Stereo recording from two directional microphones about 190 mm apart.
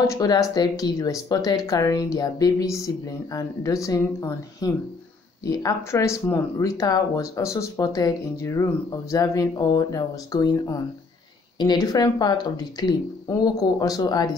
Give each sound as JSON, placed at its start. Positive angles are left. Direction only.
{"t": 0.0, "sound": "speech", "side_deg": 15}